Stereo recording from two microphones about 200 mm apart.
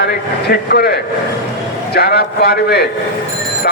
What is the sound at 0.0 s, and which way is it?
A man's voice, 50° left (ahead or behind).